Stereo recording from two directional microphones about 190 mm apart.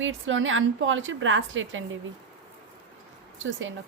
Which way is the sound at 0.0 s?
90° right.